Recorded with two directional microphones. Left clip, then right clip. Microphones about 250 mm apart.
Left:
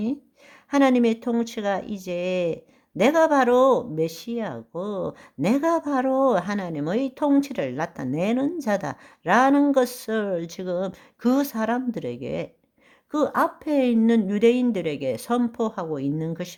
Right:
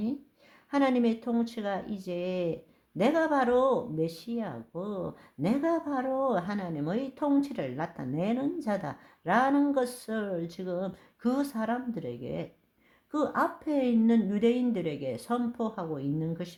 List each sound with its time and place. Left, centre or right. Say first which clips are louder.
0.7 s speech: left 7 dB; left